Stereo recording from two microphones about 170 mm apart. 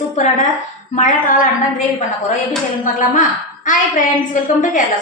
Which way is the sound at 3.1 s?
50° left (ahead or behind).